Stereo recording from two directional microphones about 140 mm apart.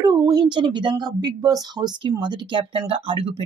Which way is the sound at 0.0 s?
30° right (ahead or behind).